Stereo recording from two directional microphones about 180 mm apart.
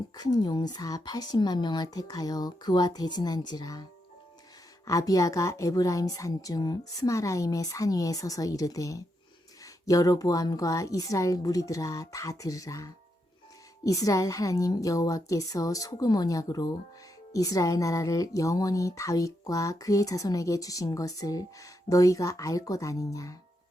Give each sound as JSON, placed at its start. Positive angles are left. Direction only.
{"t": 0.2, "sound": "speech", "side_deg": 25}
{"t": 4.9, "sound": "speech", "side_deg": 20}